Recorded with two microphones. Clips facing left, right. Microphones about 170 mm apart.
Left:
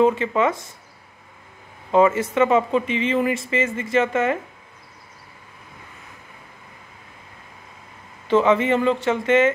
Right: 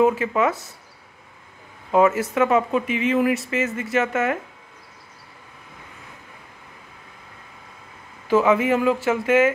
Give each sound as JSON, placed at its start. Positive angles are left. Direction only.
{"t": 0.0, "sound": "speech", "side_deg": -5}
{"t": 1.9, "sound": "speech", "side_deg": -5}
{"t": 8.3, "sound": "speech", "side_deg": -5}